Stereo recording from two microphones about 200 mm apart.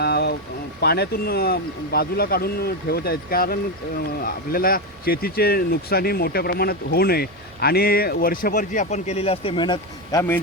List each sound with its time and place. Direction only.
0.0 s vehicle: 55° left (ahead or behind)
0.8 s speech: 55° left (ahead or behind); by 10.4 s 15° left (ahead or behind)